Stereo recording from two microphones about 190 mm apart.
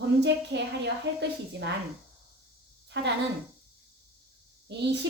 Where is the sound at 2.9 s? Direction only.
70° right (ahead or behind).